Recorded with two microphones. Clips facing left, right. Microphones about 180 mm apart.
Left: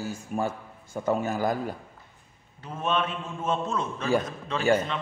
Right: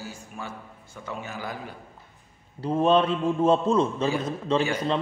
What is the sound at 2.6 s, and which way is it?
Speech, 35° right (ahead or behind).